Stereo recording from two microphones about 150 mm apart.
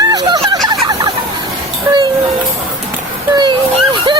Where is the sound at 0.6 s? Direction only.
25° right (ahead or behind).